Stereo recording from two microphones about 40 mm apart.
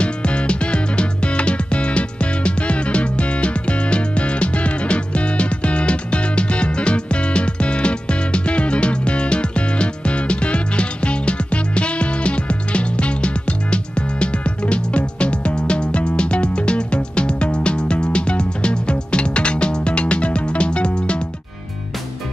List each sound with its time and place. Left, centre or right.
0.0 s music: left